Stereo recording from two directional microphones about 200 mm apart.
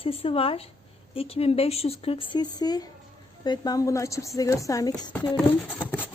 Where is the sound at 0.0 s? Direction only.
30° left (ahead or behind).